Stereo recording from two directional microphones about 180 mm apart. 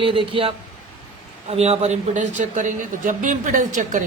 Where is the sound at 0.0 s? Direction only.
30° right (ahead or behind).